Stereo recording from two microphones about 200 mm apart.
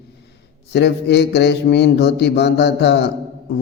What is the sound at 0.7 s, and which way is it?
A man's voice, 55° left (ahead or behind).